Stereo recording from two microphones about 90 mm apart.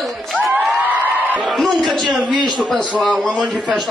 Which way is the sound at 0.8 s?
20° right (ahead or behind).